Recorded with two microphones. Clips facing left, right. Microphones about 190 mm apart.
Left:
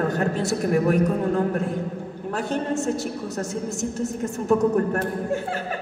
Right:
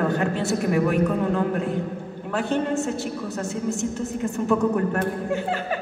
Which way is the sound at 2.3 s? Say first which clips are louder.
Right 2 dB; 40° left (ahead or behind).